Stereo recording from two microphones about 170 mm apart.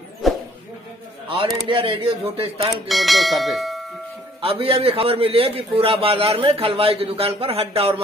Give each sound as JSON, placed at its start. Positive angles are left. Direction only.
{"t": 0.2, "sound": "a sound", "side_deg": 0}
{"t": 1.7, "sound": "a man's voice", "side_deg": -30}
{"t": 2.7, "sound": "speech", "side_deg": 0}
{"t": 4.4, "sound": "a man's voice", "side_deg": -35}